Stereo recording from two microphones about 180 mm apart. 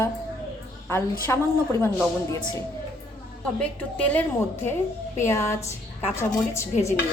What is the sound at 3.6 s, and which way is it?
A woman's voice, 5° left (ahead or behind).